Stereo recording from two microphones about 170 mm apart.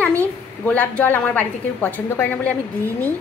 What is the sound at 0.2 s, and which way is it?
A woman's voice, 10° left (ahead or behind).